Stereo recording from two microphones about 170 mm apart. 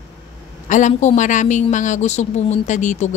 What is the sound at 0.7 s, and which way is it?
A woman's voice, 45° left (ahead or behind).